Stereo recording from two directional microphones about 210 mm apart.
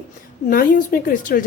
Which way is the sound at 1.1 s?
40° left (ahead or behind).